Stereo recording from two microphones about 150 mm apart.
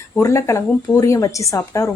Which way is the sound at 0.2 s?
20° left (ahead or behind).